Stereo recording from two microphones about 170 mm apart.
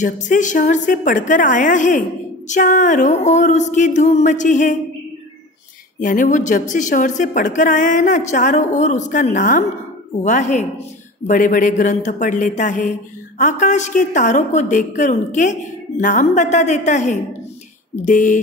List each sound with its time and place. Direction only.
0.0 s a woman's voice: 50° left (ahead or behind)
5.9 s a woman's voice: 50° left (ahead or behind)